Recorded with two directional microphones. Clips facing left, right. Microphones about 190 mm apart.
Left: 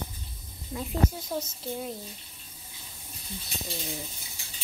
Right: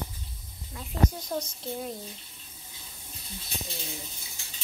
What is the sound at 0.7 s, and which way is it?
Speech, 20° left (ahead or behind).